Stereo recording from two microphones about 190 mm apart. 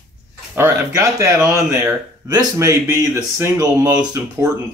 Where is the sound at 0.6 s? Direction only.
15° right (ahead or behind).